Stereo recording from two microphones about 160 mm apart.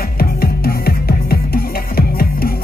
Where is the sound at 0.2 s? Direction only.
70° left (ahead or behind).